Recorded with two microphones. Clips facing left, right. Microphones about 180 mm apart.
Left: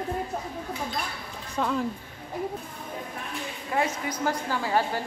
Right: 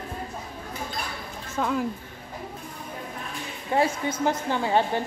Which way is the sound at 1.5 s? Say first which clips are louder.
Right 1 dB; 5° right (ahead or behind).